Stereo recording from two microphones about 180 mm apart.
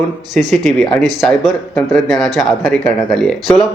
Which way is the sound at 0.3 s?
Centre (ahead or behind).